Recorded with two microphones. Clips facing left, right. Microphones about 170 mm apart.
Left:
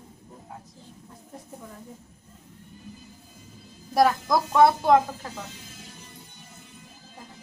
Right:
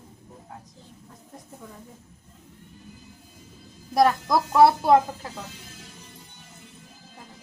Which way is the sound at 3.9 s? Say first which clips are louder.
Right 1 dB; centre (ahead or behind).